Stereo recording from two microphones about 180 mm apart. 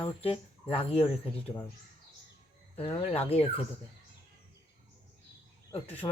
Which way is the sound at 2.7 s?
30° left (ahead or behind).